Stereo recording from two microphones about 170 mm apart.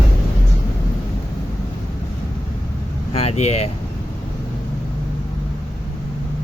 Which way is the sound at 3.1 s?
40° left (ahead or behind).